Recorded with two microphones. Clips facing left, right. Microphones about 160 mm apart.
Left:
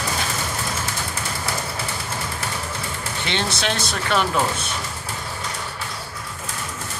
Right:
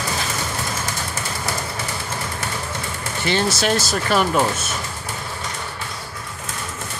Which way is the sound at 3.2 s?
5° right (ahead or behind).